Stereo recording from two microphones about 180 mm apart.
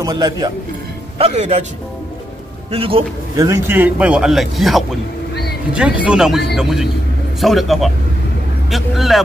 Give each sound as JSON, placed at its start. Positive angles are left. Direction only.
{"t": 0.0, "sound": "a man's voice", "side_deg": -20}
{"t": 1.1, "sound": "a man's voice", "side_deg": -35}
{"t": 2.7, "sound": "a man's voice", "side_deg": -30}
{"t": 3.3, "sound": "a man's voice", "side_deg": -15}